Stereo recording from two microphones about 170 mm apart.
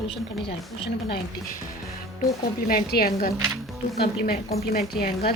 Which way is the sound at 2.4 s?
65° left (ahead or behind).